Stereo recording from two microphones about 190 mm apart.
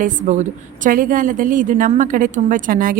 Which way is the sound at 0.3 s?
40° right (ahead or behind).